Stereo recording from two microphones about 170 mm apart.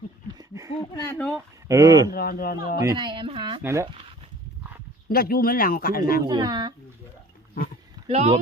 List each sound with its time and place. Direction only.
0.3 s a sound: 20° right (ahead or behind)
0.8 s speech: 20° left (ahead or behind)
1.3 s speech: 20° right (ahead or behind)
2.1 s speech: 65° left (ahead or behind)
2.8 s speech: 25° right (ahead or behind)
3.6 s speech: 15° right (ahead or behind)
5.0 s speech: 60° left (ahead or behind)
6.2 s speech: 25° right (ahead or behind)
8.0 s speech: 35° right (ahead or behind)